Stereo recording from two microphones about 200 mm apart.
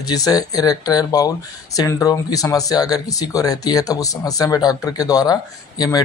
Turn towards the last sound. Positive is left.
turn(degrees=20)  # may be behind; listen again after turning